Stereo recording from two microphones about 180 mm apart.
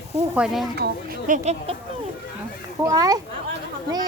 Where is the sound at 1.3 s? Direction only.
40° right (ahead or behind).